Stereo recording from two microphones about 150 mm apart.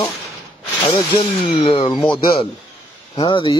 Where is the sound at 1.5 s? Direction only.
40° left (ahead or behind).